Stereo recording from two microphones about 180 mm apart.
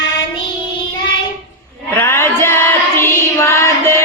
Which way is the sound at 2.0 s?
15° left (ahead or behind).